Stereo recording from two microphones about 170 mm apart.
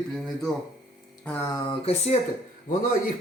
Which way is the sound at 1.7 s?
40° left (ahead or behind).